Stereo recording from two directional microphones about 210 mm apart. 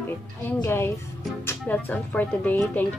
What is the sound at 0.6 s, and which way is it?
Speech, 10° left (ahead or behind).